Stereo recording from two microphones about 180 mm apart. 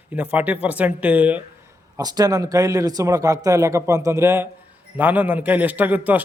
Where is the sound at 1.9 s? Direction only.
20° right (ahead or behind).